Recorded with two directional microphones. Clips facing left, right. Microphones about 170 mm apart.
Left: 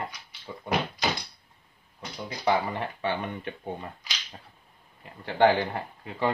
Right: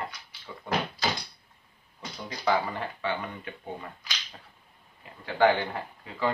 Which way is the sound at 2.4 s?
20° left (ahead or behind).